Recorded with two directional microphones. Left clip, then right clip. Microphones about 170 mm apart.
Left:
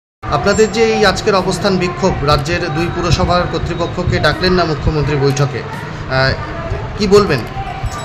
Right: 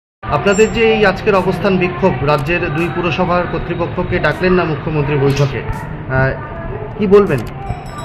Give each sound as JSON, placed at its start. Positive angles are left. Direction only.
{"t": 0.3, "sound": "speech", "side_deg": 15}